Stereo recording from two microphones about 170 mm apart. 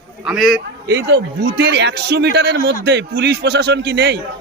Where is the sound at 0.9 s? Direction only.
80° right.